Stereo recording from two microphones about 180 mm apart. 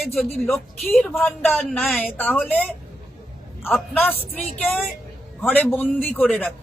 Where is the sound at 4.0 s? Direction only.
10° left (ahead or behind).